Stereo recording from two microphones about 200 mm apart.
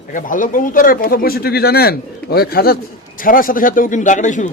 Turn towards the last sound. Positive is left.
turn(degrees=40)  # may be behind; listen again after turning